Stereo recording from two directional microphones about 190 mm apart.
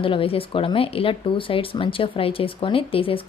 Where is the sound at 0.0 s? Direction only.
30° left (ahead or behind).